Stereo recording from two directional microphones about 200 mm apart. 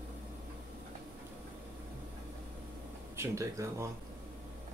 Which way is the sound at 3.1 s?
15° right (ahead or behind).